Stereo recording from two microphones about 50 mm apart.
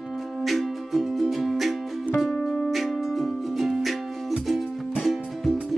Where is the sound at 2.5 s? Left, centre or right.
Centre.